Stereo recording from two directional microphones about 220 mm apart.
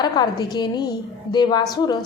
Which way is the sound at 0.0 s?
20° left (ahead or behind).